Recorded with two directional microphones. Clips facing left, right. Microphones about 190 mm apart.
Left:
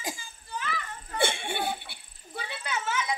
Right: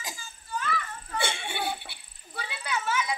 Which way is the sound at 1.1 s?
55° left (ahead or behind).